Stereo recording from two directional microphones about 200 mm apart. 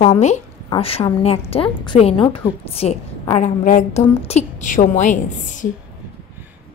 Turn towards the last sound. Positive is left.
turn(degrees=40)  # may be behind; listen again after turning